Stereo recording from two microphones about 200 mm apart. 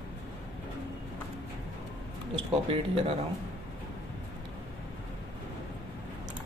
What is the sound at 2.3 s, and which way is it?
Speech, 30° right (ahead or behind).